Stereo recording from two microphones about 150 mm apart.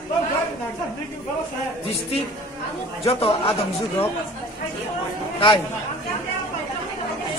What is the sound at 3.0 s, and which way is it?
Speech, 40° left (ahead or behind).